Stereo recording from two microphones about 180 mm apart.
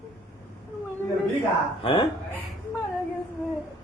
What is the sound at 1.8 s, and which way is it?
Speech, 25° left (ahead or behind).